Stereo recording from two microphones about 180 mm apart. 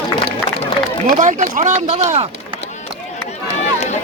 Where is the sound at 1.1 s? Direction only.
45° right (ahead or behind).